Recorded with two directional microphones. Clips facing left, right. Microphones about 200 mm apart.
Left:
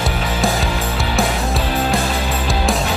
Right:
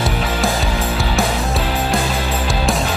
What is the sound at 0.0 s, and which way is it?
Music, centre (ahead or behind).